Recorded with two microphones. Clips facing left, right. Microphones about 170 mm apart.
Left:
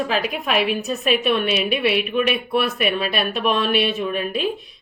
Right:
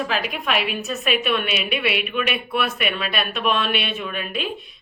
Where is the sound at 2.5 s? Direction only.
35° left (ahead or behind).